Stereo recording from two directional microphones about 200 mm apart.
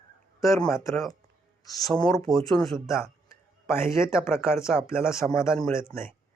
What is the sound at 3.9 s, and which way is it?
Speech, 15° left (ahead or behind).